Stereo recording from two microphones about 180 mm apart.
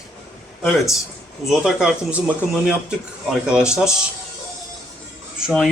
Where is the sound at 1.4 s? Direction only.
Centre (ahead or behind).